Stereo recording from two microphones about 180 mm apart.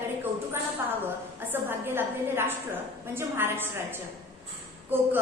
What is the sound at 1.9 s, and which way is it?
A woman's voice, 15° right (ahead or behind).